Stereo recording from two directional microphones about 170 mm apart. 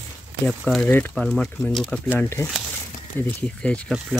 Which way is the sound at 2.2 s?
15° left (ahead or behind).